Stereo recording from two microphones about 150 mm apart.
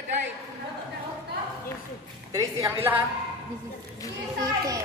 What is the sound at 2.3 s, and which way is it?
Speech, 20° right (ahead or behind).